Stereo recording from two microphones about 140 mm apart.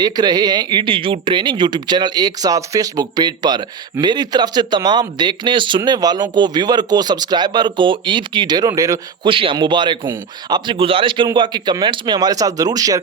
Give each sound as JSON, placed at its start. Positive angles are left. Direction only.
{"t": 0.0, "sound": "speech", "side_deg": -30}
{"t": 9.2, "sound": "speech", "side_deg": -40}